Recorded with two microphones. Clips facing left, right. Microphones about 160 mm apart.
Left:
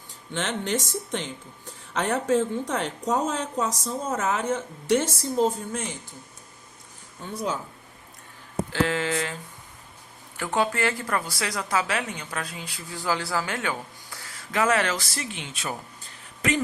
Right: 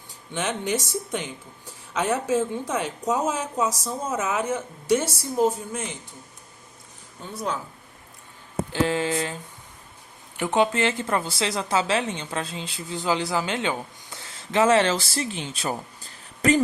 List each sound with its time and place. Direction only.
0.3 s speech: 10° right (ahead or behind)
8.7 s a woman's voice: 15° right (ahead or behind); by 16.6 s 35° right (ahead or behind)